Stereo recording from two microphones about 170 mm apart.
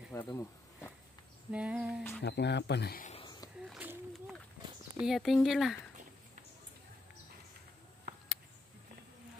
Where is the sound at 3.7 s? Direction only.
5° right (ahead or behind).